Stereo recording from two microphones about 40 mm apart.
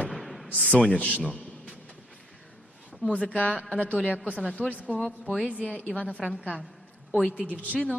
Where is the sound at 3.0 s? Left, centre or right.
Left.